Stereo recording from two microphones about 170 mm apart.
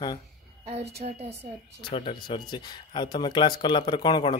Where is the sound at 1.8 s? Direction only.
30° left (ahead or behind).